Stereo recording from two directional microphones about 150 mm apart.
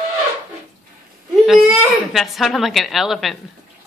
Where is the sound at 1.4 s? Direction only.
Centre (ahead or behind).